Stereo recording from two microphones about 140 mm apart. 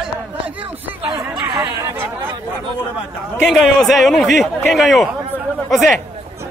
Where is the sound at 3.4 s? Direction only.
Centre (ahead or behind).